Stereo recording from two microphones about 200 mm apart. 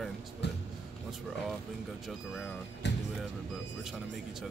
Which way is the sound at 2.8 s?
60° left (ahead or behind).